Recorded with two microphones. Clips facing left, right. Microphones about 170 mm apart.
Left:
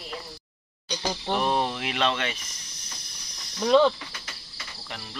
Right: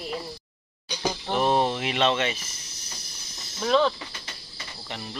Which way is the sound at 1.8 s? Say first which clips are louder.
Right 3 dB; centre (ahead or behind).